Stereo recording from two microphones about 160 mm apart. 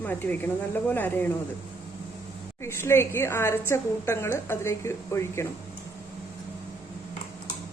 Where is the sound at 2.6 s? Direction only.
15° left (ahead or behind).